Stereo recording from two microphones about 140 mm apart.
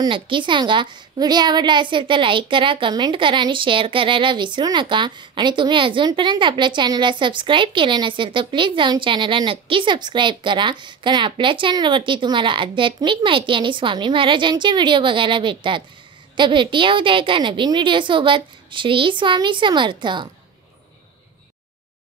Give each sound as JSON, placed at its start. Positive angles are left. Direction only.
{"t": 0.0, "sound": "a woman's voice", "side_deg": -35}